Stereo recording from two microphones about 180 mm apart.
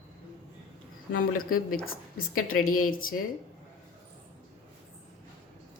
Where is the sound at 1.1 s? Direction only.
55° left (ahead or behind).